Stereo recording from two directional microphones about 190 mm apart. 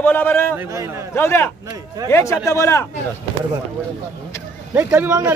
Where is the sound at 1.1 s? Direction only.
10° left (ahead or behind).